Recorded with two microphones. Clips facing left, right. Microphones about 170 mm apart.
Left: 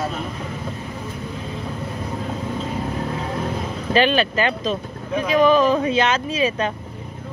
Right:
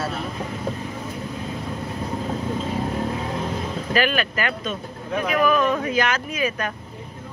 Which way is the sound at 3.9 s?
25° left (ahead or behind).